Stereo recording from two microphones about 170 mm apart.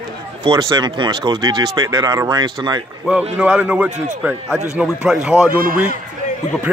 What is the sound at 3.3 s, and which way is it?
A man's voice, 5° right (ahead or behind).